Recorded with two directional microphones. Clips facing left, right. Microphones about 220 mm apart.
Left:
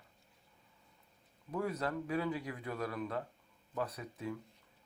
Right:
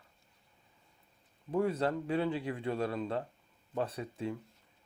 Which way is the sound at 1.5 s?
30° right (ahead or behind).